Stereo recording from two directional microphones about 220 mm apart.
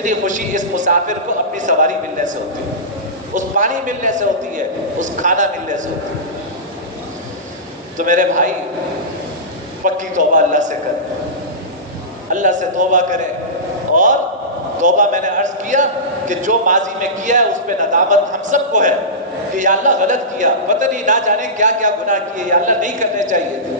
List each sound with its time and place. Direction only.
0.0 s a man's voice: 35° right (ahead or behind)
3.3 s a man's voice: 35° right (ahead or behind)
8.0 s a man's voice: 35° right (ahead or behind)
9.8 s a man's voice: 35° right (ahead or behind)
12.3 s a man's voice: 35° right (ahead or behind)
13.9 s a sound: 35° right (ahead or behind)
14.8 s a man's voice: 35° right (ahead or behind)